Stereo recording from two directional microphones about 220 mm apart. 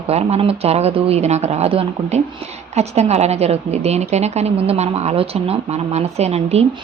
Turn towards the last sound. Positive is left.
turn(degrees=-30)  # may be behind; listen again after turning